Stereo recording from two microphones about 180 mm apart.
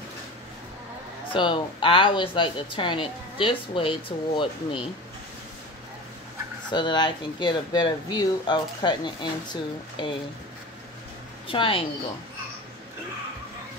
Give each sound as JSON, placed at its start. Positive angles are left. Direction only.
{"t": 1.3, "sound": "speech", "side_deg": 30}
{"t": 6.7, "sound": "speech", "side_deg": 25}
{"t": 11.4, "sound": "speech", "side_deg": 30}